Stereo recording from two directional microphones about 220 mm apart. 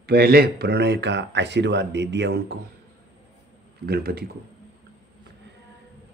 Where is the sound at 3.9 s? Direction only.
45° right (ahead or behind).